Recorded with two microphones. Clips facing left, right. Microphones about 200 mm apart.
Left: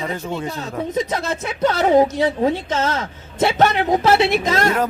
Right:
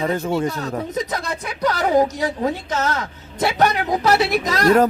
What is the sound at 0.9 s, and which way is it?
A man's voice, 25° left (ahead or behind).